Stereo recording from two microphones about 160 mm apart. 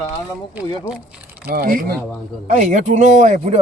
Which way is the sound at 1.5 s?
65° right (ahead or behind).